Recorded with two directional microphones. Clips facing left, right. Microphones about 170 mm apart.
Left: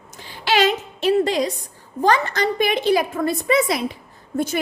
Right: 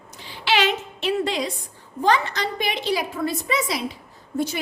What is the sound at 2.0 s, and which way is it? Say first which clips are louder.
A woman's voice: left 3 dB; 45° left (ahead or behind).